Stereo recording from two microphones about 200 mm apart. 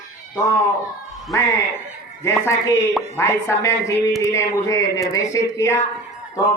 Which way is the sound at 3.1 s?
15° left (ahead or behind).